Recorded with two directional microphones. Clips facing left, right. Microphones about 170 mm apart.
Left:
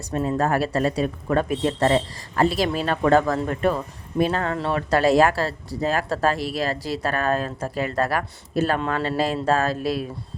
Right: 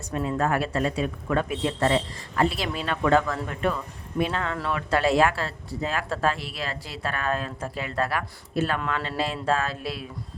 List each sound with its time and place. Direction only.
0.1 s speech: 35° left (ahead or behind)